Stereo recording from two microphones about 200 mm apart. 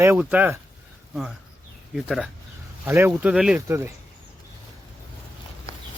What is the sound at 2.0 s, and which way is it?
Speech, centre (ahead or behind).